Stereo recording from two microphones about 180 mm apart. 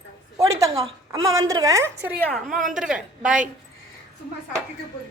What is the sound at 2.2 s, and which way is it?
A woman's voice, centre (ahead or behind).